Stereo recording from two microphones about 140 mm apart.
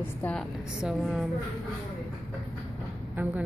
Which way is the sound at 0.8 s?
Centre (ahead or behind).